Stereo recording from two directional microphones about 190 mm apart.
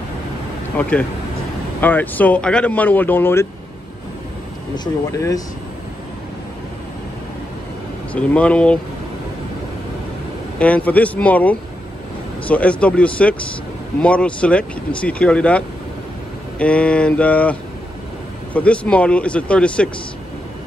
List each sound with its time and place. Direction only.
0.7 s speech: 10° left (ahead or behind)
4.7 s speech: 20° left (ahead or behind)
8.1 s speech: 5° left (ahead or behind)
10.6 s speech: 10° left (ahead or behind)